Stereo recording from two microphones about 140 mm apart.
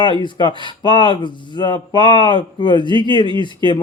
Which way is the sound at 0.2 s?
35° left (ahead or behind).